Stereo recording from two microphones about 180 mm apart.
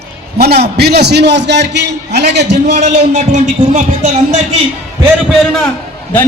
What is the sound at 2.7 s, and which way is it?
A man's voice, 40° right (ahead or behind).